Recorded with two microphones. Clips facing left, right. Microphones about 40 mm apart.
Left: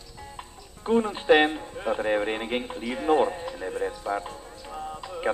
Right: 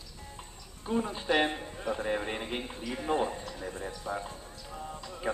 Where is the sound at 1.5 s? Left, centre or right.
Centre.